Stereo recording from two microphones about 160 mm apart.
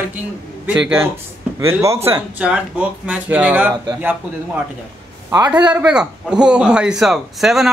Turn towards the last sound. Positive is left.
turn(degrees=0)  # may be behind; listen again after turning